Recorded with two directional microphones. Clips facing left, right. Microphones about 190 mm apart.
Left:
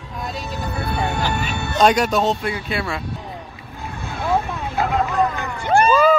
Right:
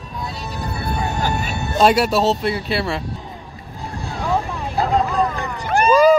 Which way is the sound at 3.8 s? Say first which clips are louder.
Right 1 dB; 35° right (ahead or behind).